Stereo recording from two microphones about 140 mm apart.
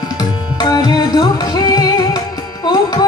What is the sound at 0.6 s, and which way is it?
Music, 30° left (ahead or behind).